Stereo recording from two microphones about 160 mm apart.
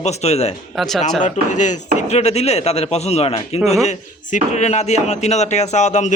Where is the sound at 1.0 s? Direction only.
50° left (ahead or behind).